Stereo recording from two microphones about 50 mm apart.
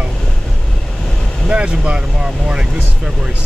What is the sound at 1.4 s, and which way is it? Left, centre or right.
Vehicle, right.